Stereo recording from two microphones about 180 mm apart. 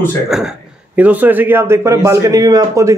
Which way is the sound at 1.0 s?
10° right (ahead or behind).